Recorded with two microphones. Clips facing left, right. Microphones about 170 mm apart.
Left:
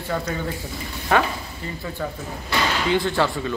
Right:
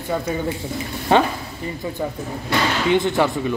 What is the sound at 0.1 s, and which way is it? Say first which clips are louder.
A man's voice: right 4 dB; 15° right (ahead or behind).